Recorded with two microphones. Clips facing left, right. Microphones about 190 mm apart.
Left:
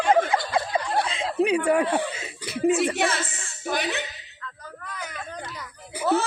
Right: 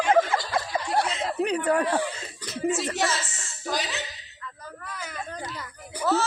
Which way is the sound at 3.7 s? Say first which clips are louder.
Left 3 dB; 60° left (ahead or behind).